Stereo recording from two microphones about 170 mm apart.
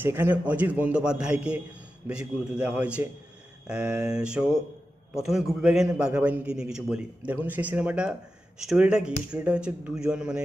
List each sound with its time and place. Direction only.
0.0 s a man's voice: 10° right (ahead or behind)